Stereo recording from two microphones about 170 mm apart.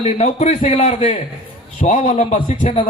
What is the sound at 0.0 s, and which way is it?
A man's voice, 40° left (ahead or behind).